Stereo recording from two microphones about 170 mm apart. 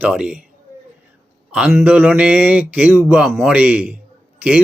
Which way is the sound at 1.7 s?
10° right (ahead or behind).